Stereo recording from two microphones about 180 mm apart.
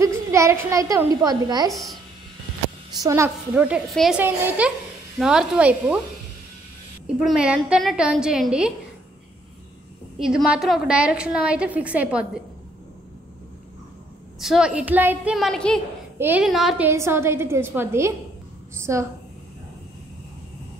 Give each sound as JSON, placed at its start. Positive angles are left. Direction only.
{"t": 0.0, "sound": "a woman's voice", "side_deg": -15}
{"t": 1.7, "sound": "a woman's voice", "side_deg": 0}
{"t": 3.0, "sound": "a woman's voice", "side_deg": -15}
{"t": 7.2, "sound": "a woman's voice", "side_deg": -5}
{"t": 10.1, "sound": "a woman's voice", "side_deg": -5}
{"t": 14.4, "sound": "a woman's voice", "side_deg": -5}
{"t": 16.2, "sound": "a woman's voice", "side_deg": -10}